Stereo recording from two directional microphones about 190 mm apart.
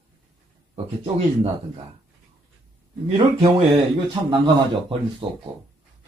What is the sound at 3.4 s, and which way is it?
Speech, 35° right (ahead or behind).